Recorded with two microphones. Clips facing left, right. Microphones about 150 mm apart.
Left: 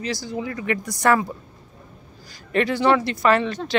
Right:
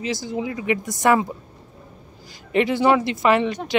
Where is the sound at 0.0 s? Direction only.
20° right (ahead or behind).